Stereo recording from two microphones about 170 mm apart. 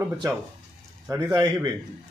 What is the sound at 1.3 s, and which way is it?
Speech, 25° right (ahead or behind).